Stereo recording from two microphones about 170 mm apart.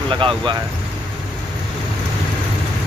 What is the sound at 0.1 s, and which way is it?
Speech, 30° right (ahead or behind).